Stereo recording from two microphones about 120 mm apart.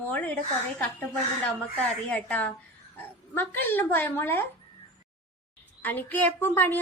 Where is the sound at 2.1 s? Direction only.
10° left (ahead or behind).